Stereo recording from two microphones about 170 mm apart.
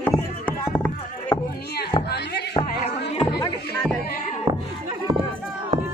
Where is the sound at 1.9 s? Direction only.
30° left (ahead or behind).